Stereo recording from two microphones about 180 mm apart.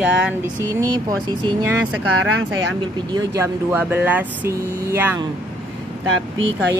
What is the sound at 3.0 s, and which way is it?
Speech, 20° right (ahead or behind).